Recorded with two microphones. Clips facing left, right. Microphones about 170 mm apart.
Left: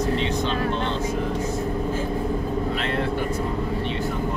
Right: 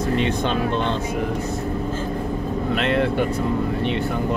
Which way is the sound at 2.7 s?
70° right (ahead or behind).